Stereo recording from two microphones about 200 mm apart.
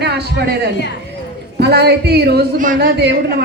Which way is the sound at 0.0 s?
55° right (ahead or behind).